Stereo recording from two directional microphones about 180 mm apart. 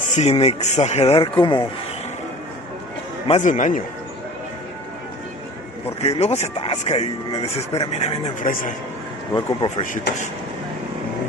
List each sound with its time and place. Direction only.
0.0 s speech: 40° left (ahead or behind)
3.3 s a man's voice: 40° left (ahead or behind)
6.0 s speech: 35° left (ahead or behind)
9.3 s speech: 25° left (ahead or behind)